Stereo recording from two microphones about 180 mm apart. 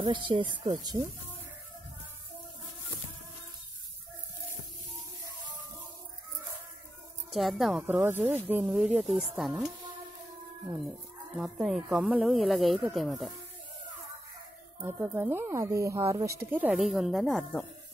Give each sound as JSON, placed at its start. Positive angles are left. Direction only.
{"t": 0.0, "sound": "speech", "side_deg": -30}
{"t": 7.3, "sound": "speech", "side_deg": 0}
{"t": 11.3, "sound": "speech", "side_deg": 0}
{"t": 14.8, "sound": "speech", "side_deg": -15}